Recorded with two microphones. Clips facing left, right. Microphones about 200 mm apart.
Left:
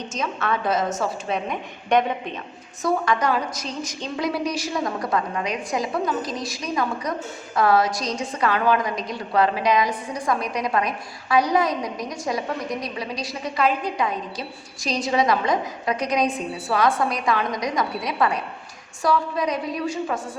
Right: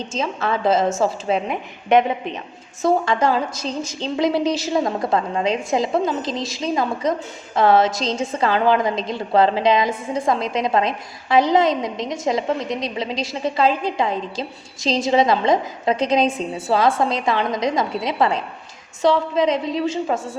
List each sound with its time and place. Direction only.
0.1 s a woman's voice: 25° right (ahead or behind)
2.8 s a woman's voice: 25° right (ahead or behind)